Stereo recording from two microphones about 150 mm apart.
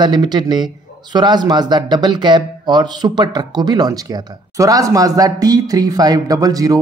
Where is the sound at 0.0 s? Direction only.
30° right (ahead or behind).